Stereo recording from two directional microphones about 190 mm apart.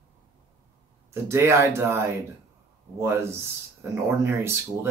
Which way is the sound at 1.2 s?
15° right (ahead or behind).